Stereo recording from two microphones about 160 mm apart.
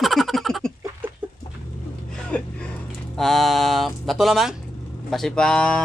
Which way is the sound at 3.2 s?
Centre (ahead or behind).